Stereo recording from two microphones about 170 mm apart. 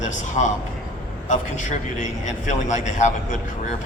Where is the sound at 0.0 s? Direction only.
45° left (ahead or behind).